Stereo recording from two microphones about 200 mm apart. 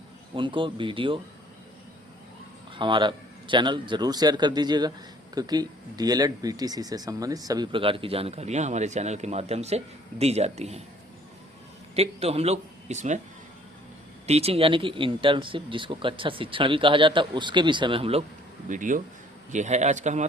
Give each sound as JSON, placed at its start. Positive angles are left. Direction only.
{"t": 0.3, "sound": "speech", "side_deg": -25}
{"t": 2.7, "sound": "speech", "side_deg": -25}
{"t": 11.9, "sound": "speech", "side_deg": -30}
{"t": 14.3, "sound": "speech", "side_deg": -30}
{"t": 18.7, "sound": "speech", "side_deg": -40}